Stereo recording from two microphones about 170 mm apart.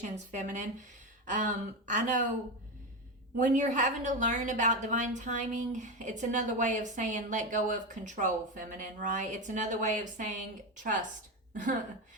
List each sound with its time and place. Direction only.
0.0 s a woman's voice: 50° right (ahead or behind)
3.3 s a woman's voice: 50° right (ahead or behind)
11.5 s a woman's voice: 50° right (ahead or behind)